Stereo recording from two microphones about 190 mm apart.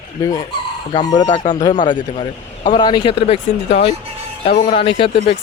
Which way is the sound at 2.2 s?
45° left (ahead or behind).